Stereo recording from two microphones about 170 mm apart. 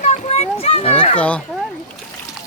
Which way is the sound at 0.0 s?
40° left (ahead or behind).